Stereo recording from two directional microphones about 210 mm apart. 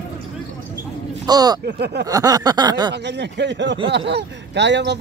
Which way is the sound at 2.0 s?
15° right (ahead or behind).